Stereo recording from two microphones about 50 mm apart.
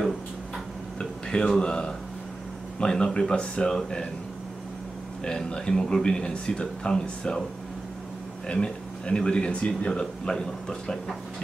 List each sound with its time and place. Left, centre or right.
0.9 s speech: centre
5.2 s speech: centre
8.5 s speech: centre